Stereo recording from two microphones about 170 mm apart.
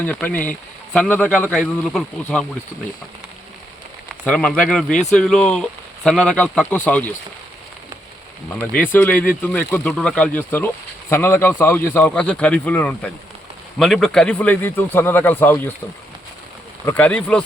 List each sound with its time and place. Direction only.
0.0 s a man's voice: 10° left (ahead or behind)
4.3 s a man's voice: 5° left (ahead or behind)
8.9 s a man's voice: 10° left (ahead or behind)
16.8 s a man's voice: 10° left (ahead or behind)